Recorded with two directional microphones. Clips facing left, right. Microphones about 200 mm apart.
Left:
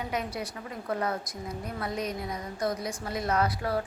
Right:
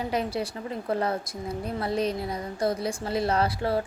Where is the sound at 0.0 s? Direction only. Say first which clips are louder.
Right 5 dB; 30° right (ahead or behind).